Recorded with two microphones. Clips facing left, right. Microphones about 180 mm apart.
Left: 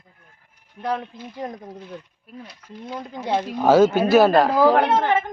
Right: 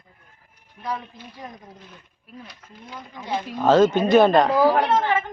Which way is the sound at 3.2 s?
75° left (ahead or behind).